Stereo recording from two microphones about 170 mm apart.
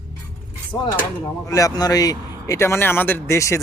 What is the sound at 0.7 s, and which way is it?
Speech, 20° left (ahead or behind).